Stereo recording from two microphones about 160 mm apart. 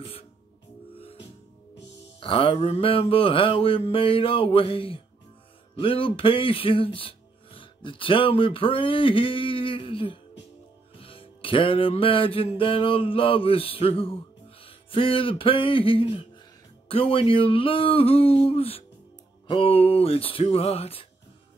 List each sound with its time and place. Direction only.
0.9 s music: 35° left (ahead or behind)
2.1 s mantra: 35° left (ahead or behind)
5.8 s speech: 35° left (ahead or behind)
11.0 s music: 35° left (ahead or behind)
16.9 s mantra: 35° left (ahead or behind)